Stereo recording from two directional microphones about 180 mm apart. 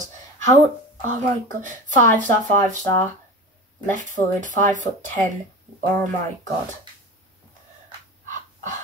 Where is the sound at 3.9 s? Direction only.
45° right (ahead or behind).